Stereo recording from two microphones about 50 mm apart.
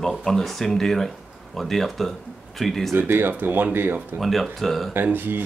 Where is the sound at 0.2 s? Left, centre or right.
Centre.